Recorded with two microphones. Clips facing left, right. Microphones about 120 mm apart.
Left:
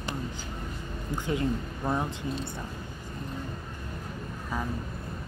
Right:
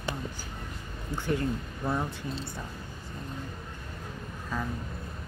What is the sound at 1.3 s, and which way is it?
Speech, 20° left (ahead or behind).